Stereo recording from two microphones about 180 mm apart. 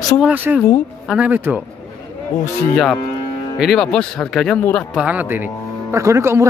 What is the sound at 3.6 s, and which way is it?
Speech, centre (ahead or behind).